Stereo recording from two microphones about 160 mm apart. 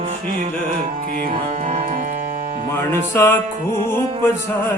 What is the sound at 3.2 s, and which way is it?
Music, 15° left (ahead or behind).